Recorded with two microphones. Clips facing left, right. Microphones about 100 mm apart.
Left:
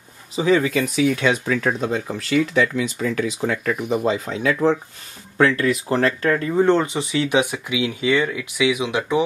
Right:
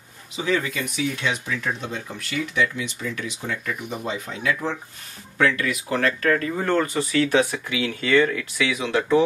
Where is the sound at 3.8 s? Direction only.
35° left (ahead or behind); by 9.2 s 15° left (ahead or behind).